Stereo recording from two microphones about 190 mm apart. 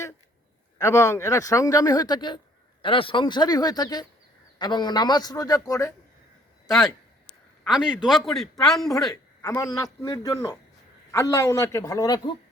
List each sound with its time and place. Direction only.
0.8 s a man's voice: 15° left (ahead or behind)
6.7 s a man's voice: centre (ahead or behind)
9.5 s speech: 20° left (ahead or behind)